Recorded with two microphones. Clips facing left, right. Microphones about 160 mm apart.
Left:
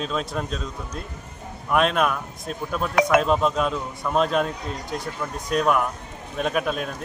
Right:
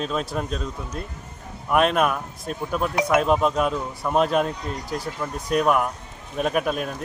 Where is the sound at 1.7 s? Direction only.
5° right (ahead or behind).